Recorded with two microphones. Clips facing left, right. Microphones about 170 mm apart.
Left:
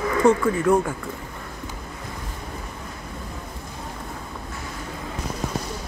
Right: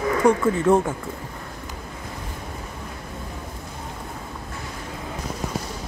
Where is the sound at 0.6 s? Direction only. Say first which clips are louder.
Right 2 dB; 25° right (ahead or behind).